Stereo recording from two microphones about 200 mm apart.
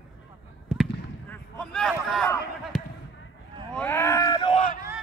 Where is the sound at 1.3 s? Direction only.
5° left (ahead or behind); by 4.6 s 20° left (ahead or behind).